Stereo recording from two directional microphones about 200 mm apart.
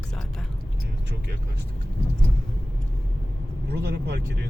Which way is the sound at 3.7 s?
55° right (ahead or behind).